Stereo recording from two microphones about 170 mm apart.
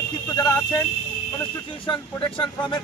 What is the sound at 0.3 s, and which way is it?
Speech, 20° left (ahead or behind).